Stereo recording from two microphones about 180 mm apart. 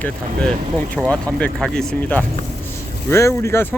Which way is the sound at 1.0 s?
Centre (ahead or behind).